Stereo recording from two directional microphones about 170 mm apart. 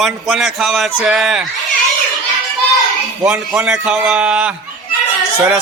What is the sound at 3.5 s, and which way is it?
Speech, 5° right (ahead or behind).